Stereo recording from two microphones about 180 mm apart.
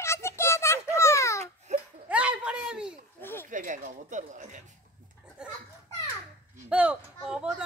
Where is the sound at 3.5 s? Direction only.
45° right (ahead or behind).